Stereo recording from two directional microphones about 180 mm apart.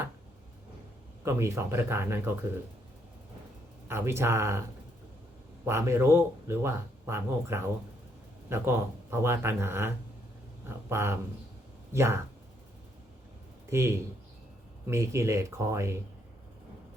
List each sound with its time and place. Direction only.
1.2 s speech: 15° right (ahead or behind)
3.8 s speech: 15° right (ahead or behind)
5.6 s speech: 15° right (ahead or behind)
13.7 s a man's voice: 15° right (ahead or behind)